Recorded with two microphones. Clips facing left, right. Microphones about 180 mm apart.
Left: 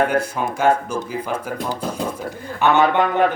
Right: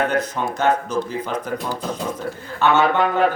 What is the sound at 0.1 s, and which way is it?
A man's voice, 10° left (ahead or behind).